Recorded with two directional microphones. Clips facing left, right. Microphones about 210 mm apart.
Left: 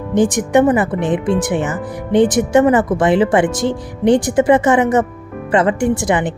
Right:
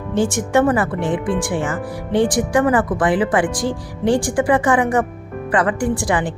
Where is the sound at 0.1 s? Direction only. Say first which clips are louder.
Left 4 dB; 20° left (ahead or behind).